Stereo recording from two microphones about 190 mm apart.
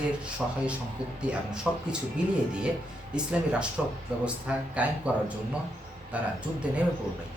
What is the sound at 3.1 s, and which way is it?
Speech, 5° right (ahead or behind).